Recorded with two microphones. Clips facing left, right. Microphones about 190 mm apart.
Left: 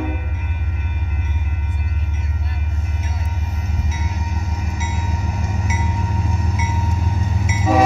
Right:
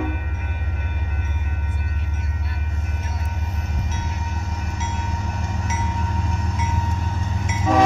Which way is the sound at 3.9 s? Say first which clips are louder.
Left 2 dB; 10° left (ahead or behind).